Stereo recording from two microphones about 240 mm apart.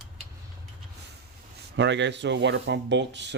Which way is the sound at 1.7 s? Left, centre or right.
Right.